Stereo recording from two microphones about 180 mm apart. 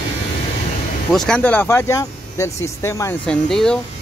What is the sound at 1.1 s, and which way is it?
Speech, 5° left (ahead or behind).